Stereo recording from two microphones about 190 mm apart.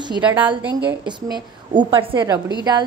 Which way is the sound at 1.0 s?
25° right (ahead or behind).